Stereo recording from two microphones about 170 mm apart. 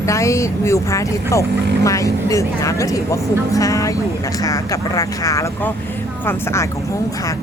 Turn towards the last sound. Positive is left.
turn(degrees=15)  # may be behind; listen again after turning